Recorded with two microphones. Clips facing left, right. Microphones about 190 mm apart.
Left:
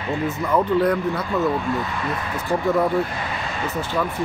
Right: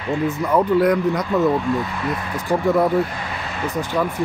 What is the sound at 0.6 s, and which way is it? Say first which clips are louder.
Speech: right 3 dB; 15° right (ahead or behind).